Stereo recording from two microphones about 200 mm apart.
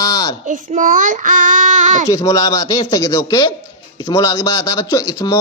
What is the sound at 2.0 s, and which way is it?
Speech, 15° left (ahead or behind).